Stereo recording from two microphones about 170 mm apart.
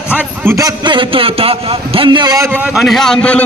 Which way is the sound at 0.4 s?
15° right (ahead or behind).